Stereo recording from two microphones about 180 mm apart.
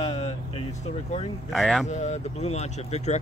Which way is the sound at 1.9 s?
40° left (ahead or behind).